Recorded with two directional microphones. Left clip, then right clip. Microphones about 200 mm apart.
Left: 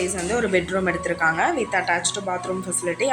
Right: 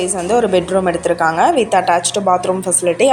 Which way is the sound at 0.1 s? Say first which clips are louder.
Right 8 dB; 20° right (ahead or behind).